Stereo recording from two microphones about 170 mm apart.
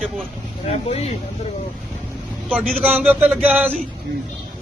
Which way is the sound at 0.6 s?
40° left (ahead or behind).